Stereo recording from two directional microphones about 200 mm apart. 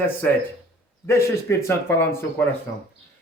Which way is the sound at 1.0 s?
15° left (ahead or behind).